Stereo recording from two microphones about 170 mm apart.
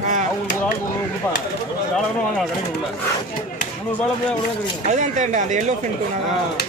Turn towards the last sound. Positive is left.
turn(degrees=-45)  # may be behind; listen again after turning